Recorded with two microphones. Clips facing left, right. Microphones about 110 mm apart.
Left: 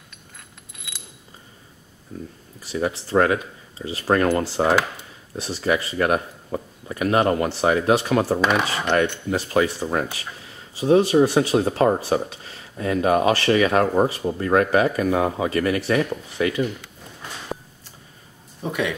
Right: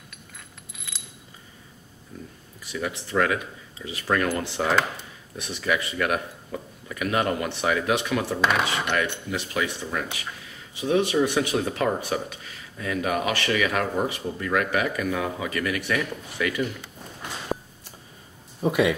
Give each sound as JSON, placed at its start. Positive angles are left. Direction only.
{"t": 2.6, "sound": "speech", "side_deg": 35}
{"t": 18.6, "sound": "speech", "side_deg": -5}